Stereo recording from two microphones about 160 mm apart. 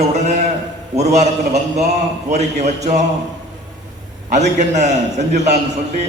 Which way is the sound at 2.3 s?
45° right (ahead or behind).